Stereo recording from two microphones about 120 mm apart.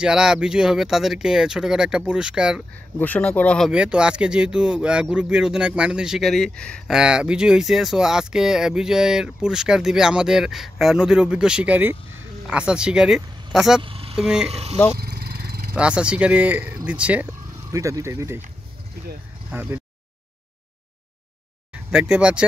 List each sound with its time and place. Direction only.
0.0 s speech: 5° right (ahead or behind)
3.0 s speech: 10° left (ahead or behind)
3.7 s speech: 10° right (ahead or behind); by 6.8 s 10° left (ahead or behind)
6.9 s speech: 5° right (ahead or behind)
13.8 s vehicle: 50° right (ahead or behind)
14.2 s speech: 5° right (ahead or behind)
14.5 s speech: 60° right (ahead or behind)
15.7 s speech: 10° right (ahead or behind)
17.6 s speech: 25° right (ahead or behind)
19.5 s speech: 15° right (ahead or behind)
21.9 s speech: 5° right (ahead or behind)